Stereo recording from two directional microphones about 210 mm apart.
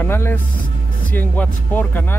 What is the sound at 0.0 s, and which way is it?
Speech, 10° left (ahead or behind).